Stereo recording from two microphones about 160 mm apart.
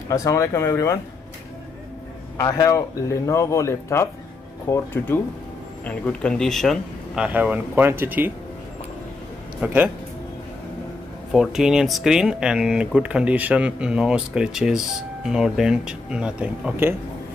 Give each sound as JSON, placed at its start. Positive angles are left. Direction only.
{"t": 0.1, "sound": "speech", "side_deg": 20}
{"t": 2.3, "sound": "speech", "side_deg": 25}
{"t": 7.2, "sound": "speech", "side_deg": -10}
{"t": 9.6, "sound": "a man's voice", "side_deg": -10}
{"t": 11.3, "sound": "speech", "side_deg": -5}